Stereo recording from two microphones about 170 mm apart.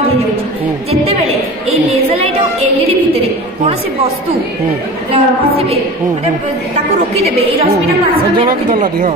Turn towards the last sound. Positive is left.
turn(degrees=-35)  # may be behind; listen again after turning